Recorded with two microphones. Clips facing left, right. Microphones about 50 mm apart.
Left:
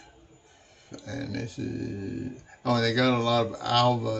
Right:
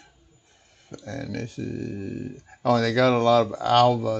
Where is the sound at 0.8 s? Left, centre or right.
Right.